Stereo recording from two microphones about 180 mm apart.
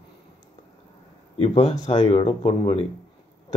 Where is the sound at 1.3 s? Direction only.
35° left (ahead or behind).